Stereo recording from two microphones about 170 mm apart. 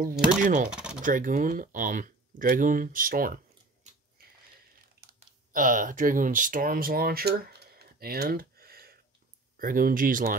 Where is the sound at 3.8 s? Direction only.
45° right (ahead or behind).